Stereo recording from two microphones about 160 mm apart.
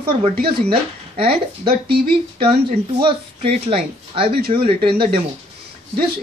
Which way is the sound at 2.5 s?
35° right (ahead or behind).